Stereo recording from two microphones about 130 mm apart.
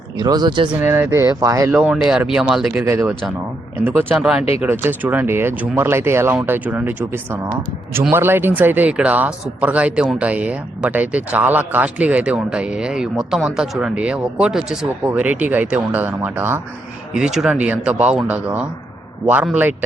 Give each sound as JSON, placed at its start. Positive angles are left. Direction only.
{"t": 0.2, "sound": "speech", "side_deg": -30}
{"t": 0.7, "sound": "speech", "side_deg": -20}
{"t": 1.7, "sound": "speech", "side_deg": -10}
{"t": 2.8, "sound": "speech", "side_deg": -20}
{"t": 4.1, "sound": "speech", "side_deg": -5}
{"t": 17.2, "sound": "speech", "side_deg": -5}